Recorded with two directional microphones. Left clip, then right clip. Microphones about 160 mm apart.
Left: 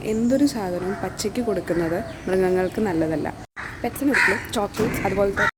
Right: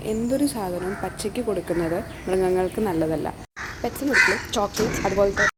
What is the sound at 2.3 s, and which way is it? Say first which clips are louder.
Speech: left 1 dB; 25° left (ahead or behind).